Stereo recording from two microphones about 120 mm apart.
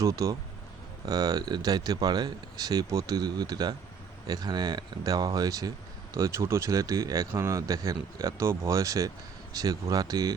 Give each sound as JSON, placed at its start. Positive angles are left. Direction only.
{"t": 0.0, "sound": "speech", "side_deg": -25}